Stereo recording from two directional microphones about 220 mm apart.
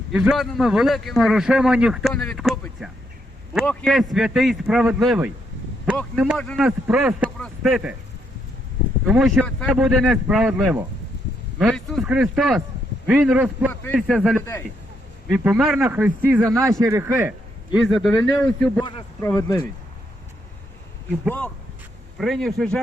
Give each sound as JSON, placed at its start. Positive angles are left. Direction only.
{"t": 0.1, "sound": "a man's voice", "side_deg": -5}
{"t": 9.0, "sound": "a man's voice", "side_deg": 0}
{"t": 18.8, "sound": "speech", "side_deg": 20}
{"t": 21.2, "sound": "a man's voice", "side_deg": 5}